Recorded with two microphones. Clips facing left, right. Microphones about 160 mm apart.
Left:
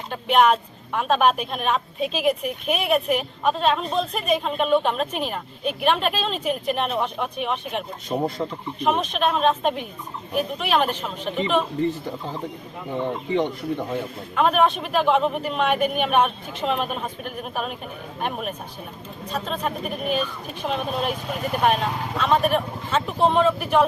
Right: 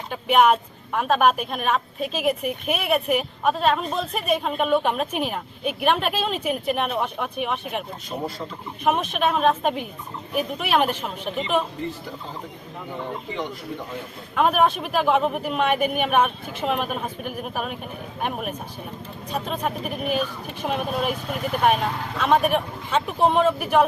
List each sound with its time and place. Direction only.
0.1 s speech: 10° right (ahead or behind)
8.1 s speech: 35° left (ahead or behind)
8.8 s speech: 5° right (ahead or behind)
14.3 s speech: 5° right (ahead or behind)